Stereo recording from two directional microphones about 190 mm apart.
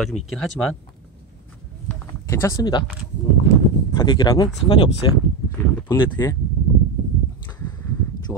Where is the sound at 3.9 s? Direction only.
20° left (ahead or behind).